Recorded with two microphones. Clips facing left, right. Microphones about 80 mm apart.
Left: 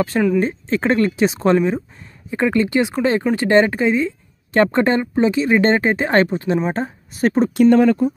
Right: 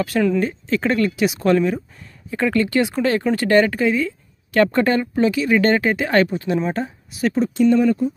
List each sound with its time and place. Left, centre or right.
0.4 s speech: left
7.7 s speech: left